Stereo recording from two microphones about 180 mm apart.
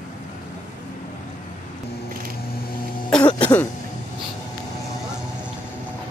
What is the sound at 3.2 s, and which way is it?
Cough, 25° left (ahead or behind).